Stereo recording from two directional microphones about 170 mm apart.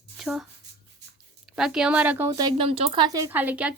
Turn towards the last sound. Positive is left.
turn(degrees=-5)  # may be behind; listen again after turning